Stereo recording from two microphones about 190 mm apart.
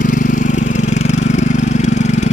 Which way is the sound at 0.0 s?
45° left (ahead or behind).